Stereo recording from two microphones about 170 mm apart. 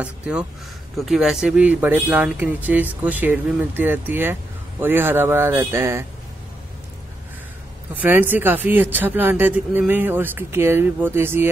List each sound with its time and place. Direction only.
0.0 s speech: 10° right (ahead or behind)
7.9 s speech: 10° right (ahead or behind)